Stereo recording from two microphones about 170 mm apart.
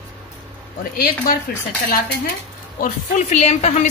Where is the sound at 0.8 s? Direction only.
55° left (ahead or behind).